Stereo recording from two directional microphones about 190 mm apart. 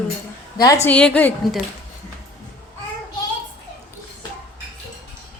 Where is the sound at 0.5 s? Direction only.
20° left (ahead or behind).